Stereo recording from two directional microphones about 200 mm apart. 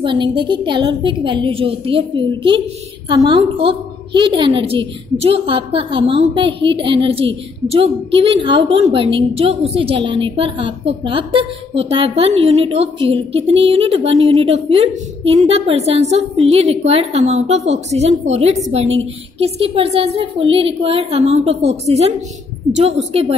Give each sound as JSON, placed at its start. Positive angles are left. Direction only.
{"t": 0.0, "sound": "a woman's voice", "side_deg": -25}